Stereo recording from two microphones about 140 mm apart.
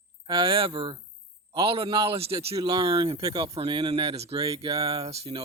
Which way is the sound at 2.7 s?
30° right (ahead or behind).